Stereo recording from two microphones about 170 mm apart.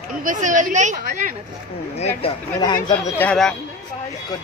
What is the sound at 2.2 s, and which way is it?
Speech, 25° left (ahead or behind).